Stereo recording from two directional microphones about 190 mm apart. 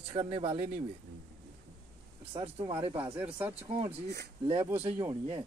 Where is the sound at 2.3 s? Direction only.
30° right (ahead or behind).